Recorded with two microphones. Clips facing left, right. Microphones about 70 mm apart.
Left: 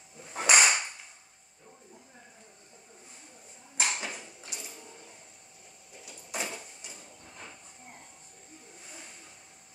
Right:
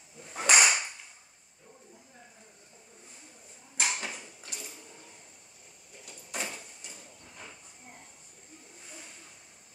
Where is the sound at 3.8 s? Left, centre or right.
Centre.